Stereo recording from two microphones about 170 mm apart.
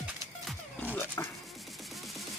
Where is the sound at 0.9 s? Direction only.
15° left (ahead or behind).